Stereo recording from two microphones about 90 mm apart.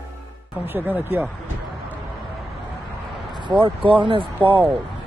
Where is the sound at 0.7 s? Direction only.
20° right (ahead or behind).